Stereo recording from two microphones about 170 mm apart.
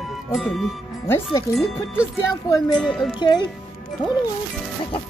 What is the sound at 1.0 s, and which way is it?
Speech, 15° left (ahead or behind).